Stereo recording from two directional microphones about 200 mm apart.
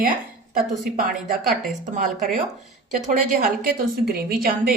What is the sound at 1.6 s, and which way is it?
Speech, 40° right (ahead or behind).